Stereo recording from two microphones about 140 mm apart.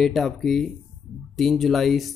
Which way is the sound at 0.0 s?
Centre (ahead or behind).